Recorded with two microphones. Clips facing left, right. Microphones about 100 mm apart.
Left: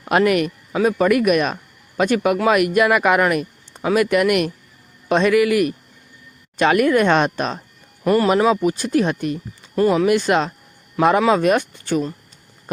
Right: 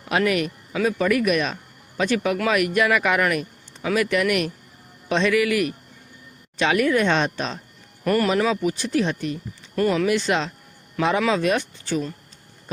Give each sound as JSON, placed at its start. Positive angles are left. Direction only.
{"t": 0.0, "sound": "a man's voice", "side_deg": 45}
{"t": 8.0, "sound": "speech", "side_deg": 20}
{"t": 8.4, "sound": "speech", "side_deg": 45}
{"t": 9.7, "sound": "speech", "side_deg": 25}
{"t": 10.1, "sound": "speech", "side_deg": 45}